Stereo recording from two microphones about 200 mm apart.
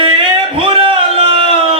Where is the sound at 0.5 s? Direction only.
25° right (ahead or behind).